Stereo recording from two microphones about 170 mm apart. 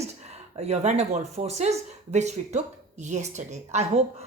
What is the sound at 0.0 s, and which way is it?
Speech, 40° right (ahead or behind).